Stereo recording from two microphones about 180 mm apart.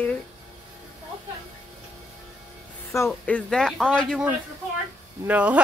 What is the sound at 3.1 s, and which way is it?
Speech, 5° left (ahead or behind).